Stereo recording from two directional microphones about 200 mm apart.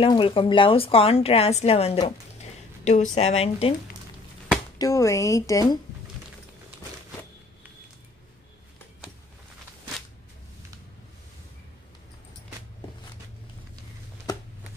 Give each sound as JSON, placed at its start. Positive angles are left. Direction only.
{"t": 0.0, "sound": "a woman's voice", "side_deg": 25}
{"t": 4.7, "sound": "speech", "side_deg": 15}